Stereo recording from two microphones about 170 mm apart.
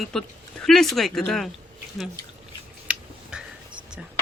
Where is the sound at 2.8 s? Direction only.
5° right (ahead or behind).